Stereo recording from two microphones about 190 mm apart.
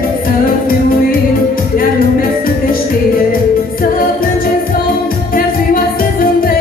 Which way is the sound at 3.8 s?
50° left (ahead or behind).